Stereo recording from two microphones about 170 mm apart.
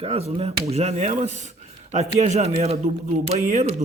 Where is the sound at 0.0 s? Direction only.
35° right (ahead or behind).